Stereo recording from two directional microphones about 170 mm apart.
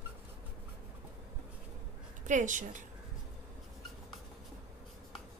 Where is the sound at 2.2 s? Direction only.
50° right (ahead or behind).